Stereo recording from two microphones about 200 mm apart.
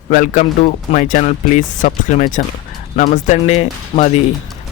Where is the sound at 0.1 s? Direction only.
40° left (ahead or behind).